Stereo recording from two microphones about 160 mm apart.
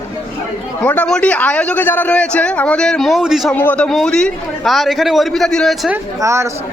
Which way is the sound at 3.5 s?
10° left (ahead or behind).